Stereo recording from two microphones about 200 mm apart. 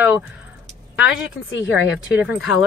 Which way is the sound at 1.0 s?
65° left (ahead or behind).